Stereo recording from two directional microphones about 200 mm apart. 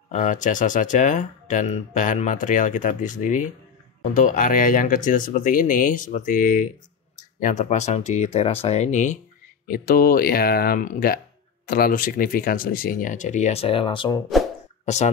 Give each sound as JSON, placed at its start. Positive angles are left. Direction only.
{"t": 0.1, "sound": "speech", "side_deg": 40}